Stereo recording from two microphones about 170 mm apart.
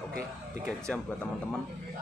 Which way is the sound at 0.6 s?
5° left (ahead or behind).